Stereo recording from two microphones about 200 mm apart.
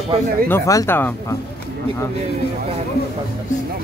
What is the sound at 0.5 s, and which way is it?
Speech, 15° left (ahead or behind).